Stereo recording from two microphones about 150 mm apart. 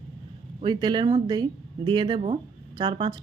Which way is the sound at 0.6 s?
30° right (ahead or behind).